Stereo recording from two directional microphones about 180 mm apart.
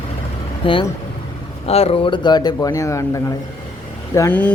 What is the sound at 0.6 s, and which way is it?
A man's voice, 30° left (ahead or behind).